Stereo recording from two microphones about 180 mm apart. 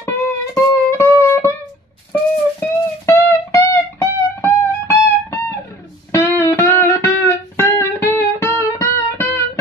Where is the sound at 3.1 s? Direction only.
15° left (ahead or behind).